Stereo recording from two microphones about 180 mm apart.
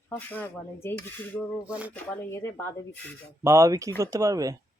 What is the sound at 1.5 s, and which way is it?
Speech, 5° right (ahead or behind).